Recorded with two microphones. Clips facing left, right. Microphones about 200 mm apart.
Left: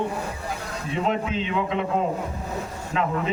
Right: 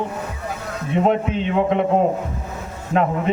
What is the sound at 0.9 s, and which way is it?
Speech, 55° right (ahead or behind).